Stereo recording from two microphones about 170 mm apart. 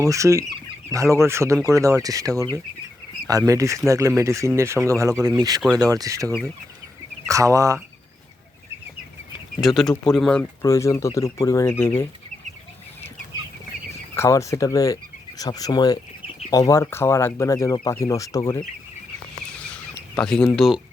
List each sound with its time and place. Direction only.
0.0 s speech: 20° right (ahead or behind)
9.6 s speech: centre (ahead or behind)
10.6 s speech: 15° left (ahead or behind)
14.2 s speech: 20° left (ahead or behind)
19.6 s a sound: 5° left (ahead or behind)